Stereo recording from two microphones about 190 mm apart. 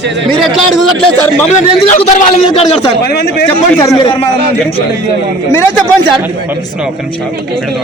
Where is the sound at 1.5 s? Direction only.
40° left (ahead or behind).